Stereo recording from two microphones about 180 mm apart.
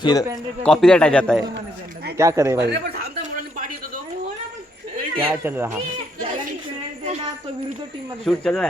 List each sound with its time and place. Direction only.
0.0 s a man's voice: 20° left (ahead or behind)
0.6 s a man's voice: 5° left (ahead or behind)
2.1 s speech: 15° right (ahead or behind)
2.6 s speech: 60° right (ahead or behind)
5.4 s speech: 15° right (ahead or behind)
8.2 s a man's voice: centre (ahead or behind)